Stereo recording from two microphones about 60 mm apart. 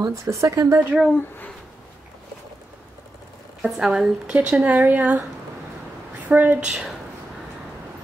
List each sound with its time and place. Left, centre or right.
0.0 s speech: right
3.6 s a woman's voice: centre; by 5.2 s right
6.2 s a woman's voice: right
6.7 s speech: centre